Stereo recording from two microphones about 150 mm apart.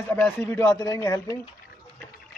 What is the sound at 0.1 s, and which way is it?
A man's voice, 15° left (ahead or behind).